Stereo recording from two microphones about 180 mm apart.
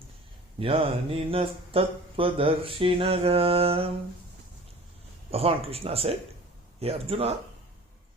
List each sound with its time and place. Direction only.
0.6 s mantra: 30° right (ahead or behind)
5.3 s mantra: 30° right (ahead or behind)